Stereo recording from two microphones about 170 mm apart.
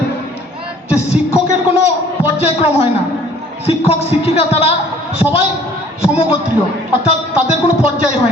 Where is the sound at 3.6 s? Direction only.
35° left (ahead or behind).